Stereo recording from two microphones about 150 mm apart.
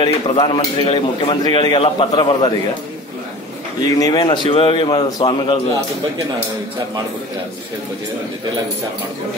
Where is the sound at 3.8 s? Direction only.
25° left (ahead or behind).